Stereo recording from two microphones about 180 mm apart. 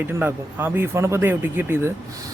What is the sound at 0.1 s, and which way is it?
Speech, 10° right (ahead or behind).